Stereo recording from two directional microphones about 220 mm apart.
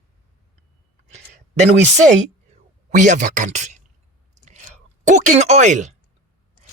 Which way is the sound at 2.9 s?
35° right (ahead or behind).